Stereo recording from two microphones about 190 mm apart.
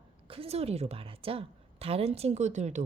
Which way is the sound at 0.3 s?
30° right (ahead or behind).